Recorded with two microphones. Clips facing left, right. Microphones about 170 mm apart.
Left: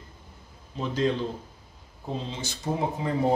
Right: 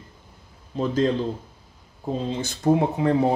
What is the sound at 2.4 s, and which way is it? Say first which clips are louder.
Speech: right 10 dB; 55° right (ahead or behind).